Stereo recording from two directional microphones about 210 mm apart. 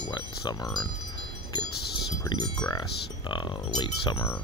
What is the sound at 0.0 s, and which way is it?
Speech, 20° left (ahead or behind).